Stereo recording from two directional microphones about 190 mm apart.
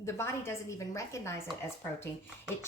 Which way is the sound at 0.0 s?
15° left (ahead or behind).